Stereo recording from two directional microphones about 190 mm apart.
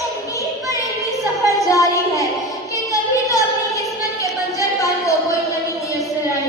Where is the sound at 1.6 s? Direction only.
15° left (ahead or behind).